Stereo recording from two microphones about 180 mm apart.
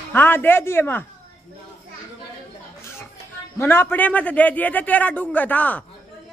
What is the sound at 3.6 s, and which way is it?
A man's voice, 10° left (ahead or behind).